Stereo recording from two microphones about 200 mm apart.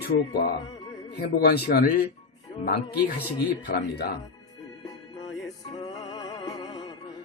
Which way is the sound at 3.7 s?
55° left (ahead or behind).